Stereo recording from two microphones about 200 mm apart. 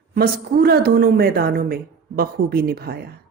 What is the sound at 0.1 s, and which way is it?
A woman's voice, 50° right (ahead or behind).